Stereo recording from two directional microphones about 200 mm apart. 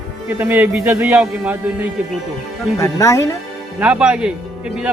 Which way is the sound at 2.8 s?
15° left (ahead or behind).